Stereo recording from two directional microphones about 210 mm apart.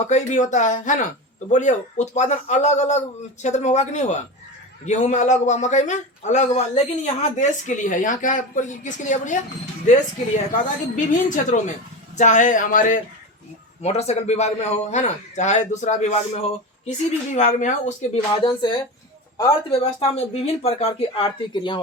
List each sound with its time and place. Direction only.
0.0 s a man's voice: 35° left (ahead or behind)
19.7 s speech: 30° left (ahead or behind)